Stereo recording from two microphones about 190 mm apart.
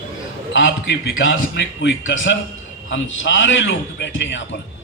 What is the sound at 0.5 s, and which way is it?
A man's voice, 85° left.